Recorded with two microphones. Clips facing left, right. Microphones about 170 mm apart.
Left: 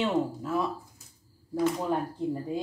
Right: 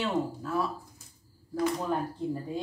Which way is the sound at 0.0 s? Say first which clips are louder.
Left 3 dB; 20° left (ahead or behind).